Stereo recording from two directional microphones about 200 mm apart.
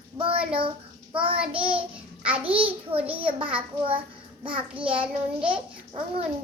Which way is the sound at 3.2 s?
25° right (ahead or behind).